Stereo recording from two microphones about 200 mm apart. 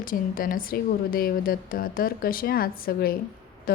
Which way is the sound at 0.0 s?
45° left (ahead or behind).